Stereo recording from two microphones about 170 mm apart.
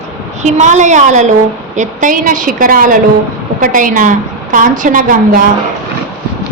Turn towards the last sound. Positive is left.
turn(degrees=-55)  # may be behind; listen again after turning